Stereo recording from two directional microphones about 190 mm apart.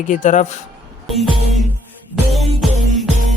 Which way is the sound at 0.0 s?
40° left (ahead or behind).